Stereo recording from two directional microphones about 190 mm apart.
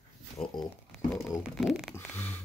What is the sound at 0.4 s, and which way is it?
Speech, 30° left (ahead or behind).